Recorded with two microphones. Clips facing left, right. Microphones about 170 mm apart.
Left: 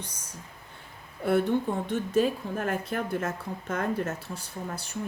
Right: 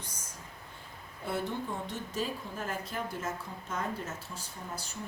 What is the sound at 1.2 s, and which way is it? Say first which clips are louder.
Speech: left 10 dB; 60° left (ahead or behind).